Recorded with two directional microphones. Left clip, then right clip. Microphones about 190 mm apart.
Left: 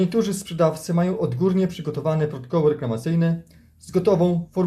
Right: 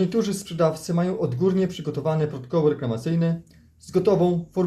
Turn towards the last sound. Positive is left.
turn(degrees=15)  # may be behind; listen again after turning